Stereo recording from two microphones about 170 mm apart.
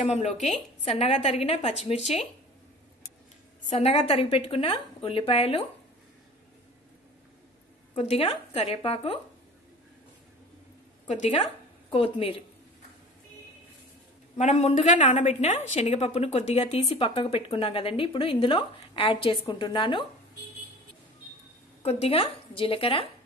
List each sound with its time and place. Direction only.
0.0 s speech: 40° left (ahead or behind)
3.7 s speech: 40° left (ahead or behind)
7.9 s speech: 35° left (ahead or behind)
11.1 s a woman's voice: 45° left (ahead or behind)
11.9 s speech: 35° left (ahead or behind)
14.3 s a woman's voice: 40° left (ahead or behind)
22.0 s speech: 35° left (ahead or behind)